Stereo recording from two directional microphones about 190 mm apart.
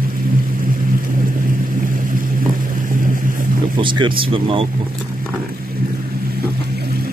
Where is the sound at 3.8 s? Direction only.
25° right (ahead or behind).